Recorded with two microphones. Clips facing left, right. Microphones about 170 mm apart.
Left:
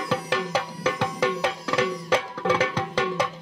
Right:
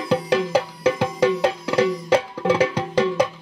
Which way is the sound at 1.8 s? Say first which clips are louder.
Right 6 dB; 30° right (ahead or behind).